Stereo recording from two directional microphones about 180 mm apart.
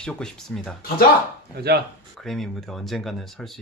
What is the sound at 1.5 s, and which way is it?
Speech, 60° right (ahead or behind).